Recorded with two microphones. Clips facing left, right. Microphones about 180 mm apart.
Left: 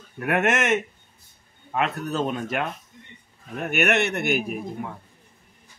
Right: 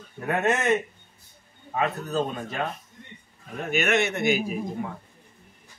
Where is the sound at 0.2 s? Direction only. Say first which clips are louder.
Left 2 dB; 90° left; by 2.7 s 75° left (ahead or behind).